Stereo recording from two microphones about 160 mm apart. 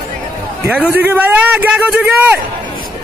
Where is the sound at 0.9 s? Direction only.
10° right (ahead or behind).